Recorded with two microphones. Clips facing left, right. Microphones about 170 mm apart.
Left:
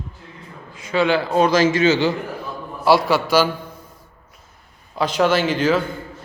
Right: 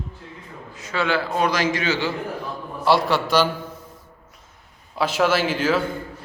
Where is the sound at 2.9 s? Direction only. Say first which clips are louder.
Left 3 dB; 5° left (ahead or behind).